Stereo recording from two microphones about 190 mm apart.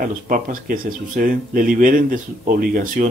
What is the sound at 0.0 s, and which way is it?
Speech, 45° right (ahead or behind).